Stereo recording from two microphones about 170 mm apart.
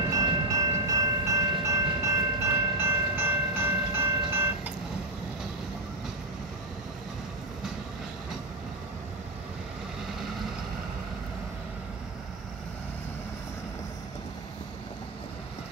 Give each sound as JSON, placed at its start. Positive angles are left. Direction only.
{"t": 0.1, "sound": "train", "side_deg": -20}